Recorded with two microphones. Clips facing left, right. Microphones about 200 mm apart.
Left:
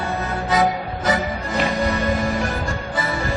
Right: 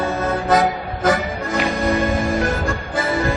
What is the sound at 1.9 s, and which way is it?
Music, 50° right (ahead or behind).